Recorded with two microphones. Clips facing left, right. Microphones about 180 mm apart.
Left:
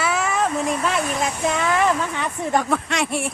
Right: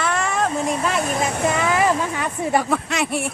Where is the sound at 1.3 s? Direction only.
60° right (ahead or behind).